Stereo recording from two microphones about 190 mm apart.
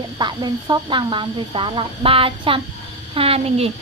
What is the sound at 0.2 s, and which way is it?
A woman's voice, 20° right (ahead or behind).